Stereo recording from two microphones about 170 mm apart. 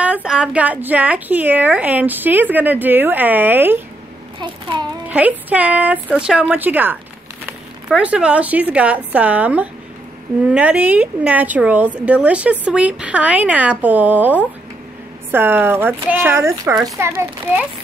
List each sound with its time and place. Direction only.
0.0 s a woman's voice: 5° right (ahead or behind)
4.4 s child singing: 25° right (ahead or behind)
5.0 s a woman's voice: 10° right (ahead or behind)